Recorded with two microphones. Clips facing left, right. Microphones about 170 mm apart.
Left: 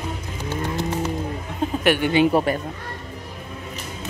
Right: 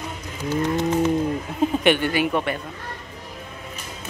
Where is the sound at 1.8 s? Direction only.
5° left (ahead or behind).